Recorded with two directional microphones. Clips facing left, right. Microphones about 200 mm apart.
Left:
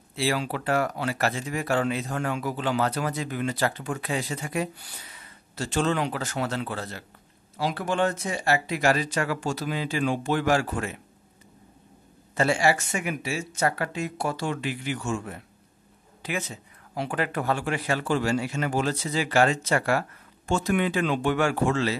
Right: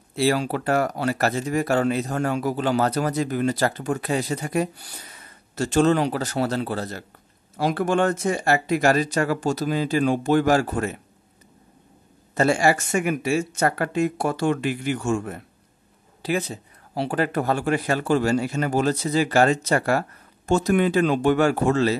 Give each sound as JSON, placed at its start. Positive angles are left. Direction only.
{"t": 0.1, "sound": "speech", "side_deg": -40}
{"t": 7.5, "sound": "speech", "side_deg": -50}
{"t": 12.4, "sound": "speech", "side_deg": -45}
{"t": 16.2, "sound": "speech", "side_deg": -35}